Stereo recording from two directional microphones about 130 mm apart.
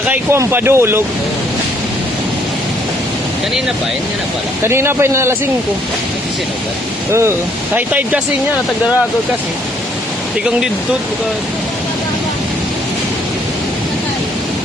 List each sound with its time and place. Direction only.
0.0 s speech: 15° right (ahead or behind)
4.6 s speech: 20° right (ahead or behind)
7.1 s speech: 20° right (ahead or behind)